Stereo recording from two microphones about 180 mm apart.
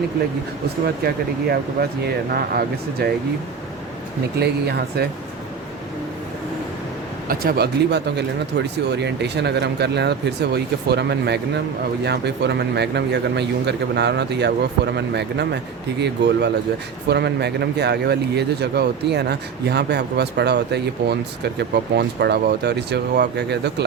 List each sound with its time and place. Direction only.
1.0 s speech: 60° right (ahead or behind)
4.4 s speech: 65° right (ahead or behind)
7.3 s speech: 60° right (ahead or behind)